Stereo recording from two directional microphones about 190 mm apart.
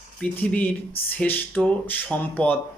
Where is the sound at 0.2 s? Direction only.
10° left (ahead or behind).